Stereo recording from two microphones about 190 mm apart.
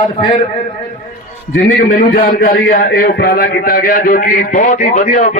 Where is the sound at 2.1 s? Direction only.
50° left (ahead or behind).